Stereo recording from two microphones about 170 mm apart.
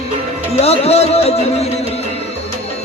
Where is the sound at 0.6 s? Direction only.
35° left (ahead or behind).